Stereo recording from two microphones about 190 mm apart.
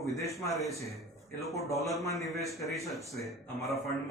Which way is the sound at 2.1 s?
Centre (ahead or behind).